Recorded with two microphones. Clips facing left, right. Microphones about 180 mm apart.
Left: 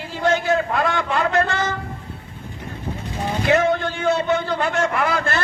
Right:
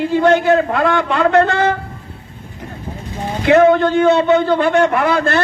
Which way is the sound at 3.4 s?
65° right (ahead or behind).